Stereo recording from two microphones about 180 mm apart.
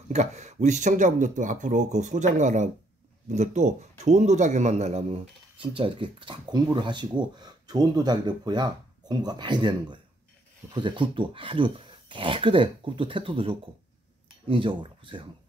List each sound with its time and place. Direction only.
0.1 s speech: 40° right (ahead or behind)